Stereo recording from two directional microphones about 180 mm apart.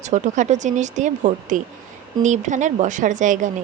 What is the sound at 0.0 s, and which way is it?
A woman's voice, 45° right (ahead or behind).